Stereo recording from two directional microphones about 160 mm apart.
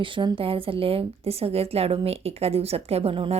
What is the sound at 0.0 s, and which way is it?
Speech, 30° right (ahead or behind).